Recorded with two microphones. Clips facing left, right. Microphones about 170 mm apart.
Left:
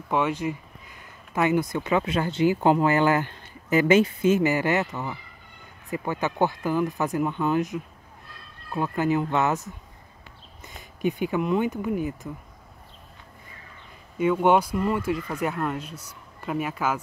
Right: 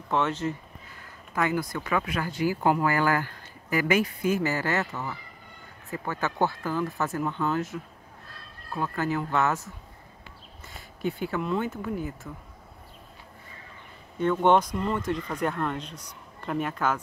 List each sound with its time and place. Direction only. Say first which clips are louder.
0.1 s speech: left 2 dB; 10° left (ahead or behind)
14.1 s speech: left 1 dB; 10° left (ahead or behind)